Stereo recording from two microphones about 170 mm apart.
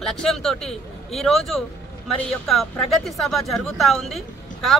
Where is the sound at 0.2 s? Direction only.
5° left (ahead or behind).